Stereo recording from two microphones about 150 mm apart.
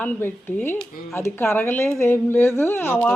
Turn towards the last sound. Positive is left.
turn(degrees=15)  # may be behind; listen again after turning